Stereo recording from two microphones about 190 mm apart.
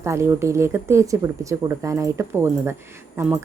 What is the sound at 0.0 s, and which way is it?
A woman's voice, 15° right (ahead or behind).